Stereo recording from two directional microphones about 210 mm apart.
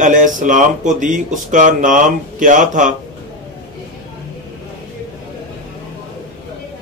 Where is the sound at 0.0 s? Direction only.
40° right (ahead or behind).